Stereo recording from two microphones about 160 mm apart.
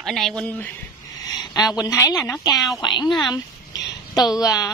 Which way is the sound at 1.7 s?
20° left (ahead or behind).